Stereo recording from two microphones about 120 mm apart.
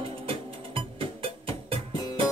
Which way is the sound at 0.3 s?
50° right (ahead or behind).